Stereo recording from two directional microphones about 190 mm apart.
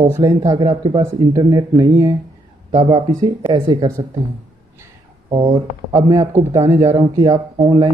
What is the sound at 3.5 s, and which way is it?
Speech, 20° right (ahead or behind).